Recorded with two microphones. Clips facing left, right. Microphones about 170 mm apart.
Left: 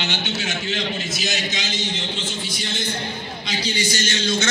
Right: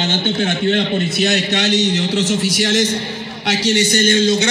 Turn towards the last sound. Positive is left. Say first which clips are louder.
# right 10 dB
turn(degrees=-50)  # may be behind; listen again after turning